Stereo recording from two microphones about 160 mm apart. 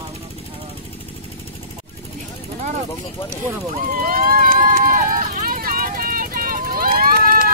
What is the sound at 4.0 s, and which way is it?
Run, 65° right (ahead or behind).